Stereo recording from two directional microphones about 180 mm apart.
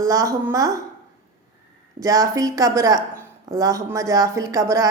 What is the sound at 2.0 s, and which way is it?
Speech, 20° right (ahead or behind).